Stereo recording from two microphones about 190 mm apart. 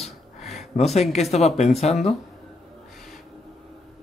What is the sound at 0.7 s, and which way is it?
Speech, 35° left (ahead or behind).